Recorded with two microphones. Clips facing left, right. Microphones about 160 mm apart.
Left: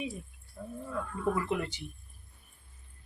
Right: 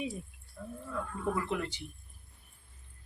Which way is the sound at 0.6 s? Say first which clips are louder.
Left 1 dB; 30° left (ahead or behind).